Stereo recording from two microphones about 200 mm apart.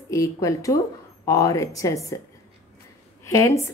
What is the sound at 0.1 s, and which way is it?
A woman's voice, 15° left (ahead or behind).